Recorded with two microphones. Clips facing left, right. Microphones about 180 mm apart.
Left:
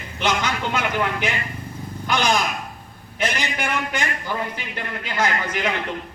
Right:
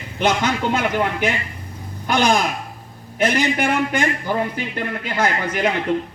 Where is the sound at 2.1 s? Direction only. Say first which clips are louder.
Right 4 dB; 50° right (ahead or behind).